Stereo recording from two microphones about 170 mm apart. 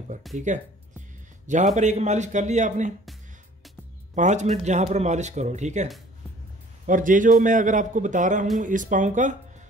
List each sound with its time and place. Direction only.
0.3 s speech: centre (ahead or behind)
1.5 s speech: 45° right (ahead or behind)
4.1 s speech: 45° right (ahead or behind)
6.9 s speech: 50° right (ahead or behind)